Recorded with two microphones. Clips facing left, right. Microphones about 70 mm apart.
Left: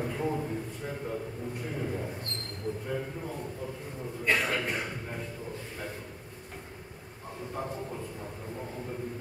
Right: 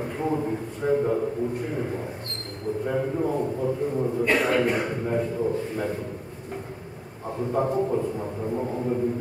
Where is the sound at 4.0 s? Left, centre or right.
Right.